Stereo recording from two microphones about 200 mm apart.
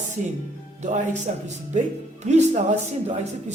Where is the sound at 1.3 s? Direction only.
40° right (ahead or behind).